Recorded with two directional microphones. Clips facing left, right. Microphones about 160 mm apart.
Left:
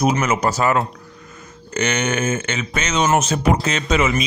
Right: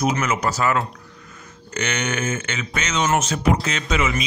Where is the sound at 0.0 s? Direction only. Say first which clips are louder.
Left 3 dB; 25° left (ahead or behind).